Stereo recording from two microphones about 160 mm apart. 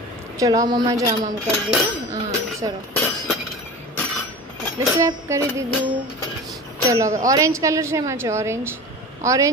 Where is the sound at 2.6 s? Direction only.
25° right (ahead or behind).